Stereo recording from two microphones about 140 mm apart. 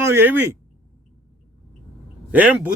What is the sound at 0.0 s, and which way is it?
Speech, 15° right (ahead or behind).